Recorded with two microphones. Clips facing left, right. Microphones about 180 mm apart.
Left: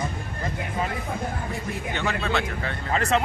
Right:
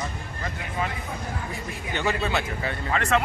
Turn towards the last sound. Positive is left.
turn(degrees=30)  # may be behind; listen again after turning